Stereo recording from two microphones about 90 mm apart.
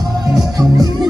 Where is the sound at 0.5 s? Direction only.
45° right (ahead or behind).